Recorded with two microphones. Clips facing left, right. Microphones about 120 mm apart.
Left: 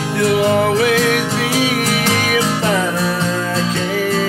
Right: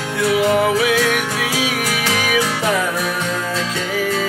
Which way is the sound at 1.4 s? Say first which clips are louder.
Left 4 dB; 25° left (ahead or behind).